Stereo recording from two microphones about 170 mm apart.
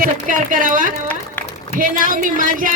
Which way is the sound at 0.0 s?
50° right (ahead or behind).